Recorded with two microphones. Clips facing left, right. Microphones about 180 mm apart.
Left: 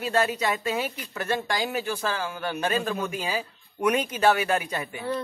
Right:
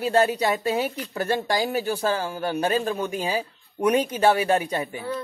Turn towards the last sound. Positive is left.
turn(degrees=-30)  # may be behind; listen again after turning